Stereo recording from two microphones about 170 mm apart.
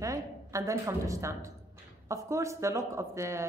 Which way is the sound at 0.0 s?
20° right (ahead or behind).